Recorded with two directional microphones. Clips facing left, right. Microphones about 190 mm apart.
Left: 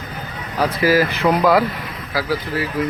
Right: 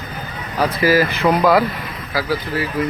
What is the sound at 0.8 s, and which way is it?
Speech, 10° left (ahead or behind).